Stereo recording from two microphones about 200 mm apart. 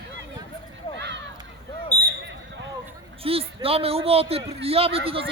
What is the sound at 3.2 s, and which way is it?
Speech, 30° right (ahead or behind).